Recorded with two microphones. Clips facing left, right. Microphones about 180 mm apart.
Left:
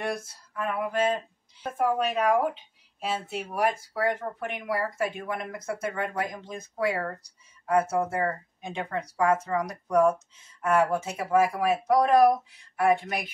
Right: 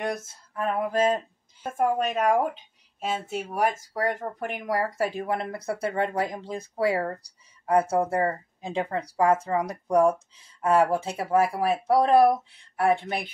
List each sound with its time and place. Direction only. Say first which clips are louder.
0.0 s speech: right 1 dB; 20° right (ahead or behind)
0.6 s speech: right 3 dB; 35° right (ahead or behind)
3.0 s speech: right 2 dB; centre (ahead or behind)
3.7 s speech: even; 40° right (ahead or behind)